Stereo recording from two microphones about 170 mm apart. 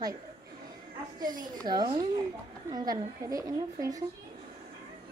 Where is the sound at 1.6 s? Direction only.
25° right (ahead or behind).